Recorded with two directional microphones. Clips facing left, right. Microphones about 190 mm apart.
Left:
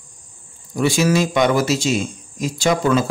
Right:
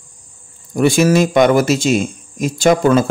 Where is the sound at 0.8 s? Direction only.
50° right (ahead or behind).